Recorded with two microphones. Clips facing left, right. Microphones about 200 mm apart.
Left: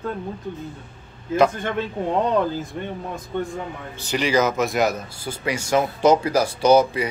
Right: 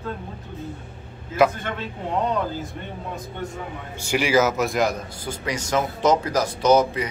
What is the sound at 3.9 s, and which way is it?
Speech, 10° right (ahead or behind).